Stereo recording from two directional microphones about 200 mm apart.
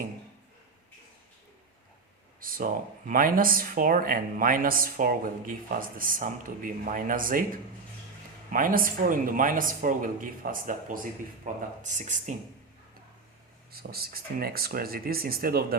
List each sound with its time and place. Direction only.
2.4 s speech: 45° right (ahead or behind)
8.4 s speech: 45° right (ahead or behind)
13.7 s speech: 50° right (ahead or behind)